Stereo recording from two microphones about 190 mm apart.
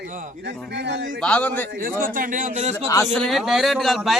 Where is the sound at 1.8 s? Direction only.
45° right (ahead or behind).